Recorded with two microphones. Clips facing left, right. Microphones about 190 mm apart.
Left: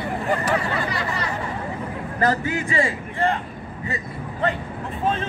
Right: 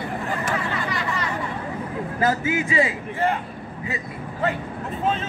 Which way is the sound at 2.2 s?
5° right (ahead or behind).